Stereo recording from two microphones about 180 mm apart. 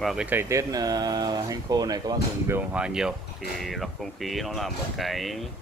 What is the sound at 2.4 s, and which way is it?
Speech, 10° right (ahead or behind).